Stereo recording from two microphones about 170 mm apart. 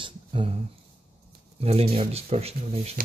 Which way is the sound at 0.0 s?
30° right (ahead or behind).